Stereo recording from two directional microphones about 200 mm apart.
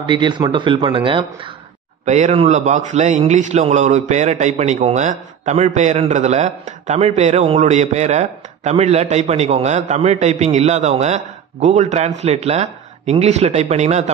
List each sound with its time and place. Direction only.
0.0 s speech: 25° right (ahead or behind)
2.0 s a man's voice: 35° right (ahead or behind)